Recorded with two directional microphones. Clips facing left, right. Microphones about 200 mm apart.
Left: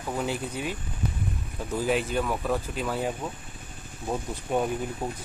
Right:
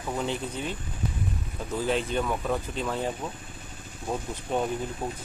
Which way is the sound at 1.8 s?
10° left (ahead or behind).